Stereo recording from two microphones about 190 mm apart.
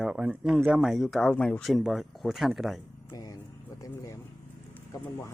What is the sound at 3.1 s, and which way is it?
Speech, 20° left (ahead or behind).